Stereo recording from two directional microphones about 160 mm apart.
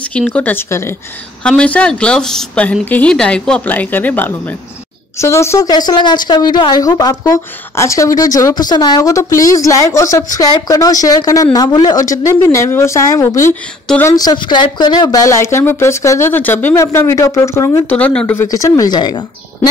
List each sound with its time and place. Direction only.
0.0 s a woman's voice: 5° left (ahead or behind)
14.1 s a woman's voice: 25° left (ahead or behind)
17.8 s speech: 10° left (ahead or behind)
18.5 s a woman's voice: 20° left (ahead or behind)